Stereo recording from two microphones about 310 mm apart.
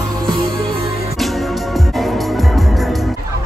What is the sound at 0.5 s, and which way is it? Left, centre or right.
Music, centre.